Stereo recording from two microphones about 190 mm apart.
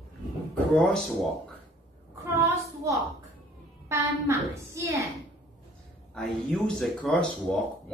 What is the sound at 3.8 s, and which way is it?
A woman's voice, 15° right (ahead or behind).